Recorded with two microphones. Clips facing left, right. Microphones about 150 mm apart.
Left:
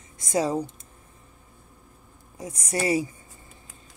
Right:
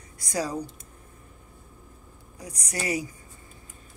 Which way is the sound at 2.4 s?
25° left (ahead or behind).